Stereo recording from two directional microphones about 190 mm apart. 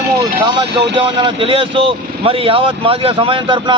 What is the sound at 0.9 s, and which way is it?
A man's voice, 25° right (ahead or behind).